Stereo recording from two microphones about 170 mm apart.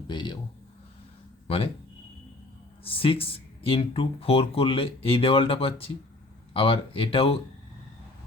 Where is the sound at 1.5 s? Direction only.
35° left (ahead or behind).